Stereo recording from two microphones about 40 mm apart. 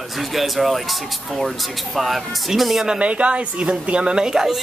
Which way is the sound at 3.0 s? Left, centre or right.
Right.